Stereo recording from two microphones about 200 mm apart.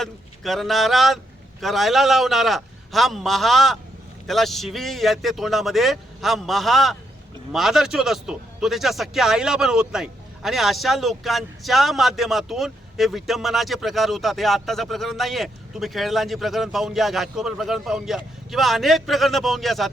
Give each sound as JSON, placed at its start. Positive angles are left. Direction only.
{"t": 0.0, "sound": "a man's voice", "side_deg": 0}